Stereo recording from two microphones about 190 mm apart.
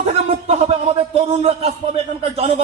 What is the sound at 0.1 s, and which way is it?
A man's voice, 30° right (ahead or behind).